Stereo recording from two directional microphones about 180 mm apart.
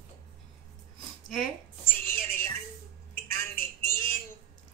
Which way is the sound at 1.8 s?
55° left (ahead or behind).